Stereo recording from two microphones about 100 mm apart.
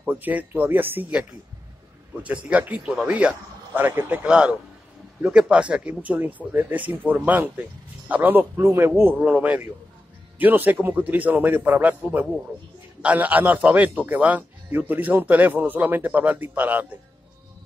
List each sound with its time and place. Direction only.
0.0 s a man's voice: 15° right (ahead or behind)
2.2 s a man's voice: 15° right (ahead or behind)